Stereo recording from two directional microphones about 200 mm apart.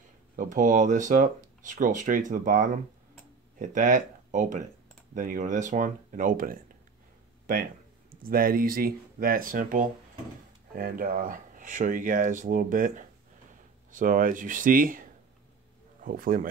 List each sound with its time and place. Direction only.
0.4 s speech: 40° right (ahead or behind)